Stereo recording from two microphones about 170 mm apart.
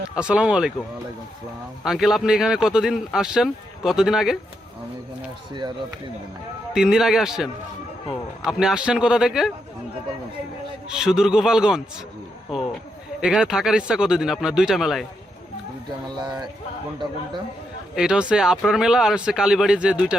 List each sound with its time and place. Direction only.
0.2 s speech: 5° right (ahead or behind)
1.8 s speech: centre (ahead or behind)
6.7 s speech: 5° right (ahead or behind)
10.8 s speech: 5° right (ahead or behind)
13.2 s speech: 5° right (ahead or behind)
16.1 s speech: 25° right (ahead or behind)
17.9 s speech: 5° right (ahead or behind)